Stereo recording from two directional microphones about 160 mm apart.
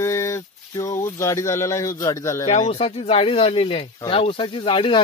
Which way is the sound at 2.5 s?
40° left (ahead or behind).